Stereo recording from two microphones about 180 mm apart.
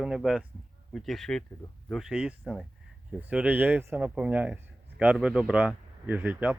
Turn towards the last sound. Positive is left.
turn(degrees=-10)  # may be behind; listen again after turning